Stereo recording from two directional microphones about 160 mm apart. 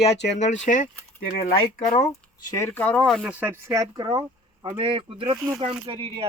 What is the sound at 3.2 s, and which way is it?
A man's voice, 10° right (ahead or behind).